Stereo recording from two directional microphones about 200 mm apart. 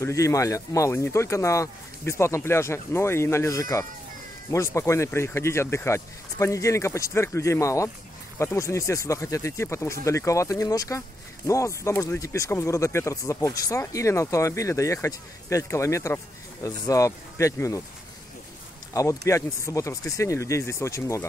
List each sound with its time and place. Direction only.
0.0 s speech: 15° left (ahead or behind)
18.9 s speech: 15° left (ahead or behind)